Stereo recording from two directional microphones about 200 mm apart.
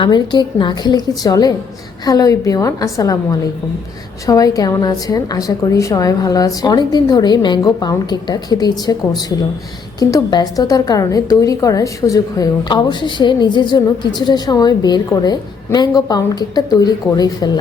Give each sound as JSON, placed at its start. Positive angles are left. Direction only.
{"t": 0.0, "sound": "a woman's voice", "side_deg": 20}
{"t": 10.0, "sound": "a woman's voice", "side_deg": 20}